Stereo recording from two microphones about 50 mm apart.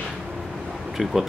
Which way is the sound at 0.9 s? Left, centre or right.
Centre.